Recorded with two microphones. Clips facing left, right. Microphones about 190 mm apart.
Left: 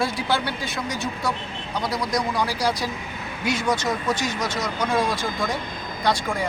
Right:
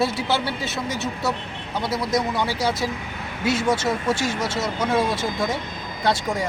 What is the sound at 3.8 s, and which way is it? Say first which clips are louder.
Speech: right 2 dB; 25° right (ahead or behind).